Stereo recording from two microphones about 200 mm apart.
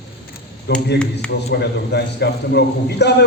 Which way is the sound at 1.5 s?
55° left (ahead or behind).